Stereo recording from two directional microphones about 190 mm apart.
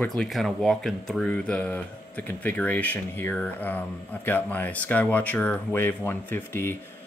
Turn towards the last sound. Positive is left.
turn(degrees=10)  # may be behind; listen again after turning